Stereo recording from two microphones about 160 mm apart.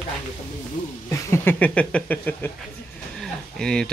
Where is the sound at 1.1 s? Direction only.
15° left (ahead or behind).